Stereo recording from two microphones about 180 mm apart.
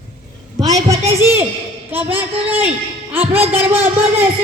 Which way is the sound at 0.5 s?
20° right (ahead or behind).